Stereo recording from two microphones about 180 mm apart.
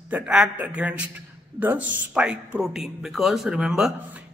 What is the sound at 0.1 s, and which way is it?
A man's voice, 5° right (ahead or behind).